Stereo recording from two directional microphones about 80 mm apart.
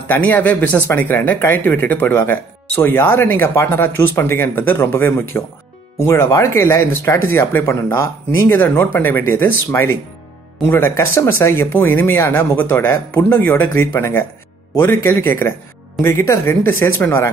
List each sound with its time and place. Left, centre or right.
0.1 s speech: left